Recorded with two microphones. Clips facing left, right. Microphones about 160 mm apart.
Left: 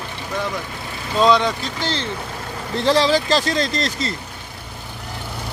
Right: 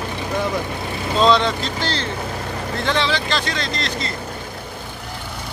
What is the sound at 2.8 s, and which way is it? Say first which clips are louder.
Speech: left 6 dB; 40° left (ahead or behind).